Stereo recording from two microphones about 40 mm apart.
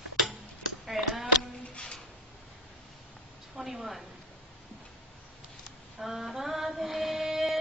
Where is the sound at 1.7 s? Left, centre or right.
Left.